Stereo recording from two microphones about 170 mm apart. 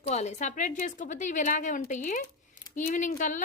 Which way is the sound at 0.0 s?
40° left (ahead or behind).